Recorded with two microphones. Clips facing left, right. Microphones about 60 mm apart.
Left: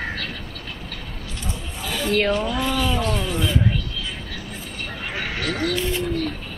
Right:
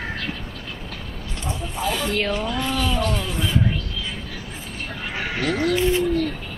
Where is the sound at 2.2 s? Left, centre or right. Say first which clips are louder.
Left 2 dB; centre.